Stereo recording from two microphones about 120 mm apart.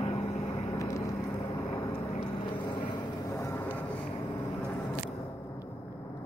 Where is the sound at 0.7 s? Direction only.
25° left (ahead or behind).